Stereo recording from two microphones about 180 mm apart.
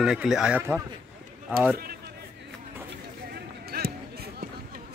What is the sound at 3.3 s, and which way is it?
Basketball bounce, 60° right (ahead or behind).